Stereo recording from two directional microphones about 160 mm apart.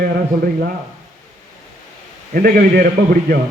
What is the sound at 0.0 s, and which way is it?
Speech, 70° right (ahead or behind).